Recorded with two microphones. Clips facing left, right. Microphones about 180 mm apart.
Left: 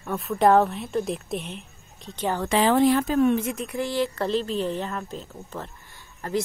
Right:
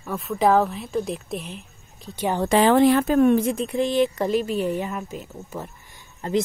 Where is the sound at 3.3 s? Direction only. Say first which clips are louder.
Right 5 dB; 30° right (ahead or behind).